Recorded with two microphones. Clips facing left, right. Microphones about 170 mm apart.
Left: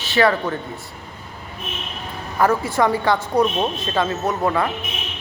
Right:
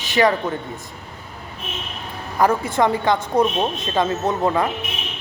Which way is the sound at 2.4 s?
20° right (ahead or behind).